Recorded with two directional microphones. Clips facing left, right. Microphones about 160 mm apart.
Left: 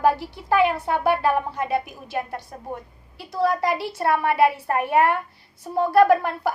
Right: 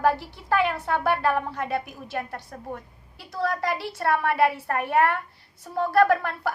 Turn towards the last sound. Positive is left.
turn(degrees=15)  # may be behind; listen again after turning